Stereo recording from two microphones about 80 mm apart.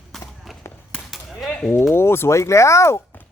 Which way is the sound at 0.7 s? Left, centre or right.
Left.